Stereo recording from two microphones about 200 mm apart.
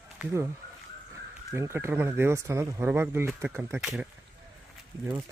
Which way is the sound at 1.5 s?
15° right (ahead or behind).